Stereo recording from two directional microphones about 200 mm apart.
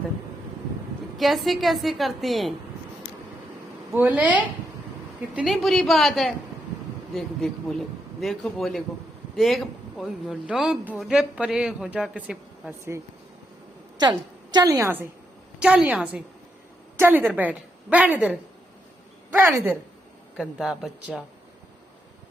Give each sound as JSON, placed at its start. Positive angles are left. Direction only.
{"t": 1.1, "sound": "speech", "side_deg": 0}
{"t": 3.9, "sound": "a woman's voice", "side_deg": -10}
{"t": 12.9, "sound": "a woman's voice", "side_deg": -15}
{"t": 20.3, "sound": "speech", "side_deg": 0}